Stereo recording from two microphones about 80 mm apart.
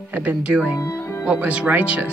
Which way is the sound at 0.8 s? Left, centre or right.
Left.